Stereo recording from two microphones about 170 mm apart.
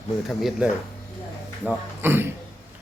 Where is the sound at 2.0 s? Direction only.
15° right (ahead or behind).